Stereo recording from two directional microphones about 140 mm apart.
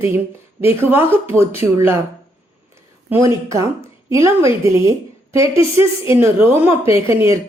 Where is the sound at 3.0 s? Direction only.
15° right (ahead or behind).